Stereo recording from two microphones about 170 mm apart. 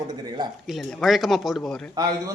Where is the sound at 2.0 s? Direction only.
20° right (ahead or behind).